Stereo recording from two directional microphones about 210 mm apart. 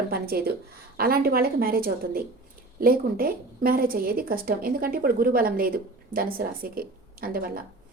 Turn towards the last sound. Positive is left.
turn(degrees=-45)  # may be behind; listen again after turning